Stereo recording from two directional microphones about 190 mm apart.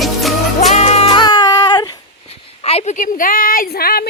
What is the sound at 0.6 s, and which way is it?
Music, 35° left (ahead or behind).